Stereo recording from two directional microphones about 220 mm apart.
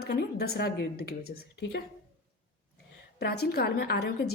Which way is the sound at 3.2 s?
50° left (ahead or behind).